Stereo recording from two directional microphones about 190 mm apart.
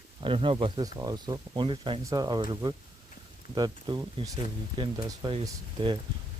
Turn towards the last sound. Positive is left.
turn(degrees=-25)  # may be behind; listen again after turning